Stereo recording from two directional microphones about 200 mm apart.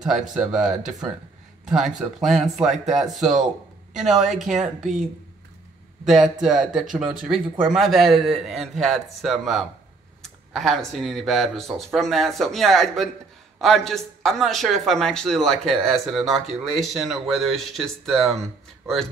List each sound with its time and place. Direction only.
0.0 s a man's voice: 5° right (ahead or behind)
6.0 s a man's voice: centre (ahead or behind)